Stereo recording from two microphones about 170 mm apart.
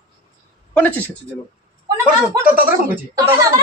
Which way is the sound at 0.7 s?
10° left (ahead or behind).